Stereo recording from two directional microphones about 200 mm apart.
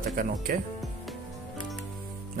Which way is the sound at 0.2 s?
45° right (ahead or behind).